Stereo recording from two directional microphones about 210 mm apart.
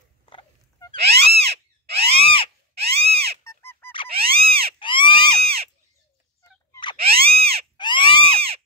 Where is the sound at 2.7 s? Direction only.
30° right (ahead or behind).